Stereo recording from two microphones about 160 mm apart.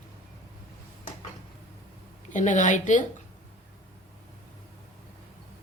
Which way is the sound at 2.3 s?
50° left (ahead or behind).